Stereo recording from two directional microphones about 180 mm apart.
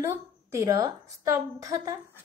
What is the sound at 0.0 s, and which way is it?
A woman's voice, 15° right (ahead or behind).